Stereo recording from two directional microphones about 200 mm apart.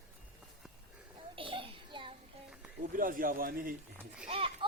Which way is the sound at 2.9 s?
45° right (ahead or behind).